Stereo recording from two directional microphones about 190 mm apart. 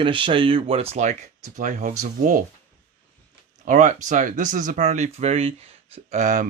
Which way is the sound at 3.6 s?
40° right (ahead or behind).